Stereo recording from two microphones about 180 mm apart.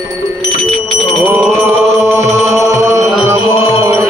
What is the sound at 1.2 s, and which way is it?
Chant, 10° right (ahead or behind).